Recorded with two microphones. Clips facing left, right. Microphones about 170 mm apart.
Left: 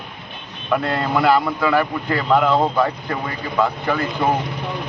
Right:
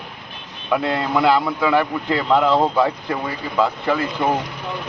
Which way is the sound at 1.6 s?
20° right (ahead or behind).